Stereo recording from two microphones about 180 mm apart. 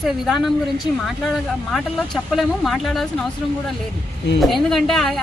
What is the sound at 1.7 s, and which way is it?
Speech, centre (ahead or behind).